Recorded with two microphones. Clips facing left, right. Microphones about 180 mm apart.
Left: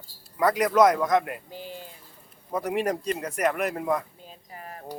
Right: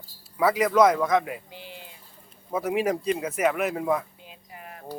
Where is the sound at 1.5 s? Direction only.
45° left (ahead or behind).